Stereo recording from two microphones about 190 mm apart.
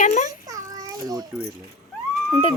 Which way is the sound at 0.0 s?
40° left (ahead or behind).